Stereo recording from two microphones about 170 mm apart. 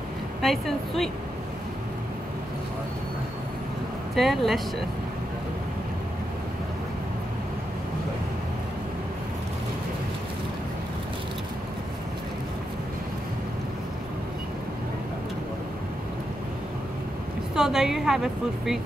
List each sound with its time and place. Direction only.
0.4 s a woman's voice: centre (ahead or behind)
4.1 s a woman's voice: centre (ahead or behind)
17.6 s a woman's voice: 5° right (ahead or behind)